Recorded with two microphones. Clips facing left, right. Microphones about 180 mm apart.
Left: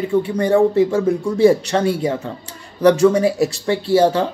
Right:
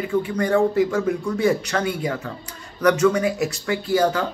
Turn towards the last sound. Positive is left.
turn(degrees=30)  # may be behind; listen again after turning